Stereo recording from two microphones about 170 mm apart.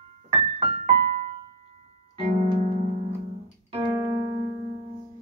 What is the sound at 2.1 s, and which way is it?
Piano, 30° right (ahead or behind).